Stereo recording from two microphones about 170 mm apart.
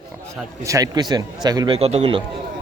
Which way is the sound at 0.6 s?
20° right (ahead or behind).